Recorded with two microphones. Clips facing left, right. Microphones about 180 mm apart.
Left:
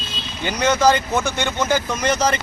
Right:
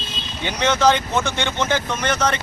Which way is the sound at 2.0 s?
35° left (ahead or behind).